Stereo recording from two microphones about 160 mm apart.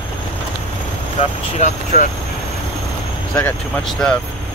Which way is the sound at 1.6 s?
45° left (ahead or behind).